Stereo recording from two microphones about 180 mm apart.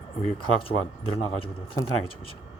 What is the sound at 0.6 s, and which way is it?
Speech, 30° left (ahead or behind).